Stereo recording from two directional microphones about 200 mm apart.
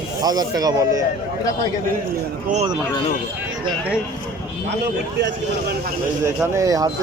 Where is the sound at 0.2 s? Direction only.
20° right (ahead or behind).